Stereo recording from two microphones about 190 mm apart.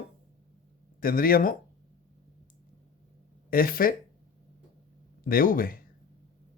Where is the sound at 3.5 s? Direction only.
50° left (ahead or behind).